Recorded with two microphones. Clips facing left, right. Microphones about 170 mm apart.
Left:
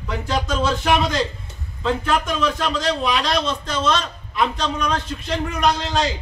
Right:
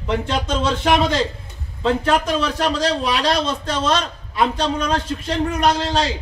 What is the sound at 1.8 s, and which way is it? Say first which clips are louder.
A man's voice: right 3 dB; 30° right (ahead or behind).